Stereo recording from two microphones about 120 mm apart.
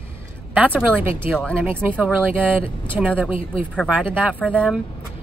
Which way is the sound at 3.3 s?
55° left (ahead or behind).